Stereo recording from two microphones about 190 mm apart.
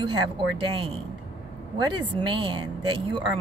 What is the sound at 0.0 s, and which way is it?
Speech, 25° right (ahead or behind).